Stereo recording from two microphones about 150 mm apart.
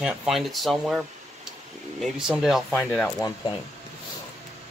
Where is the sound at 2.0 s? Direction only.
5° right (ahead or behind).